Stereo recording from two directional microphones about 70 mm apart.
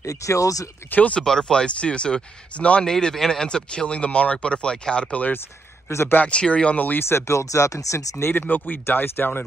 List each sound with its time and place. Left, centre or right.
0.0 s speech: left
0.9 s speech: left
1.2 s speech: centre
5.9 s speech: left
6.1 s speech: centre
7.0 s speech: left
8.3 s speech: left